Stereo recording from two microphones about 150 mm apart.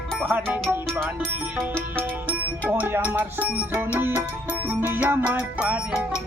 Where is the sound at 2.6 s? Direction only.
15° right (ahead or behind).